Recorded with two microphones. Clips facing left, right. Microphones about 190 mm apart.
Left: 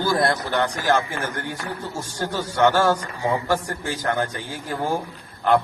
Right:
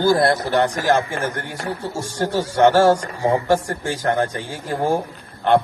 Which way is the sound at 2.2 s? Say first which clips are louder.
Right 4 dB; 40° right (ahead or behind).